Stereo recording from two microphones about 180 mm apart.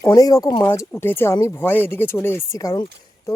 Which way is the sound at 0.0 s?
20° left (ahead or behind).